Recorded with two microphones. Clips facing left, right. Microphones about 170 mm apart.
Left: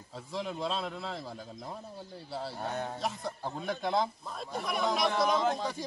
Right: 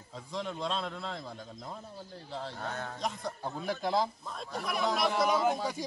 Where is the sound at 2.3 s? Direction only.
15° left (ahead or behind).